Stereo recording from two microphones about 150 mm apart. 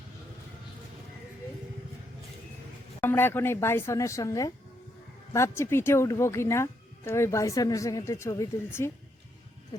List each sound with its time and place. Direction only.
3.0 s speech: 15° left (ahead or behind)